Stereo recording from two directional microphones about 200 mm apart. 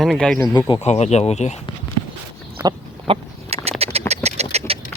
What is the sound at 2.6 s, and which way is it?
Chicken, 15° right (ahead or behind).